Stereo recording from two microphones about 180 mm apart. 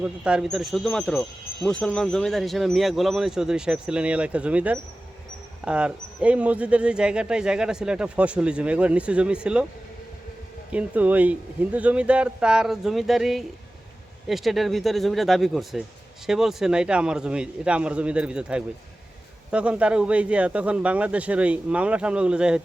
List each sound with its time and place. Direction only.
0.0 s speech: 5° right (ahead or behind)
10.7 s speech: 10° right (ahead or behind)